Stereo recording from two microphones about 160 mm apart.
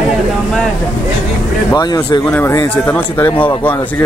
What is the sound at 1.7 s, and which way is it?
Speech, 25° left (ahead or behind).